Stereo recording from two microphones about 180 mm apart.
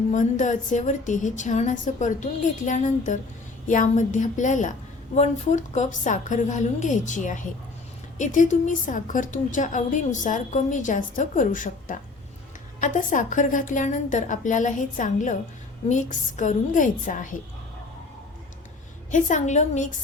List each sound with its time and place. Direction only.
0.1 s a woman's voice: 45° left (ahead or behind)
19.1 s a woman's voice: 45° left (ahead or behind)